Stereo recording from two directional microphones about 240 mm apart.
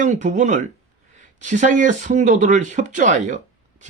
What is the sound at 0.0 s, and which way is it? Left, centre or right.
Speech, right.